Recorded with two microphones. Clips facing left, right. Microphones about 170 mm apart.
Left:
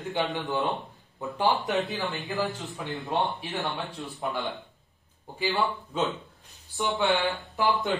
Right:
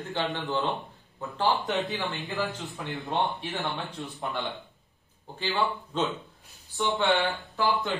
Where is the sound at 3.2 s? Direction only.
Centre (ahead or behind).